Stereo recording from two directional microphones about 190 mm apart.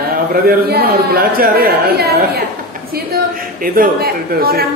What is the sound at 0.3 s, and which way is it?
Speech, 50° right (ahead or behind).